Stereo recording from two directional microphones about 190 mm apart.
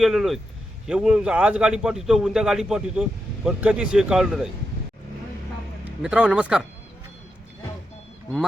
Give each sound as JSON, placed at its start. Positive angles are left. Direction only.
{"t": 0.0, "sound": "a man's voice", "side_deg": 0}
{"t": 6.0, "sound": "a man's voice", "side_deg": -5}